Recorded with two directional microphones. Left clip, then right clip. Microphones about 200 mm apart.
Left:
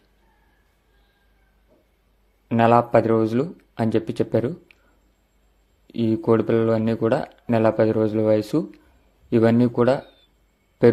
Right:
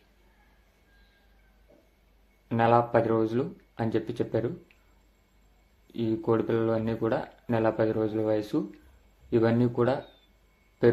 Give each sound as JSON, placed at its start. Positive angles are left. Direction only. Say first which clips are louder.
{"t": 2.5, "sound": "speech", "louder": "left 6 dB", "side_deg": 35}
{"t": 5.9, "sound": "speech", "louder": "left 7 dB", "side_deg": 35}